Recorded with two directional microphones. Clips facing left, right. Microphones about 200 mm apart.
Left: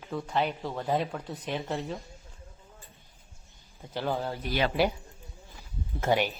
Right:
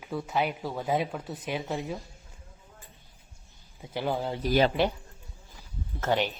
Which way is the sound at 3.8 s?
10° right (ahead or behind).